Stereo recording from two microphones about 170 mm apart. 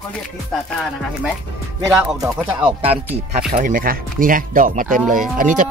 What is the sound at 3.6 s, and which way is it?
Moo, 55° right (ahead or behind).